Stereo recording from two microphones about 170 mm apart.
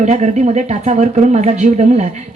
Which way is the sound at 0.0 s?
45° right (ahead or behind).